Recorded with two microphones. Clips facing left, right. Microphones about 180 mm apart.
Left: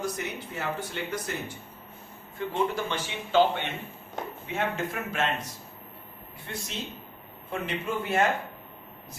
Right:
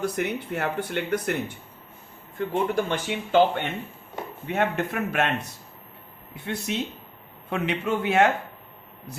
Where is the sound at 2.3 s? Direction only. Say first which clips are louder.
Right 4 dB; 50° right (ahead or behind).